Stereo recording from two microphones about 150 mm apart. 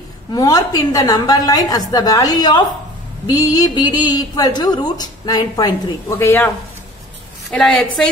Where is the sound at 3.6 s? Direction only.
30° left (ahead or behind).